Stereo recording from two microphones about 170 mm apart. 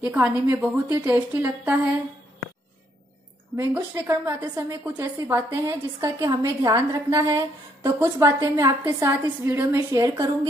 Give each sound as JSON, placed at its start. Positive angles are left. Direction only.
{"t": 0.0, "sound": "a woman's voice", "side_deg": -10}
{"t": 3.5, "sound": "a woman's voice", "side_deg": -15}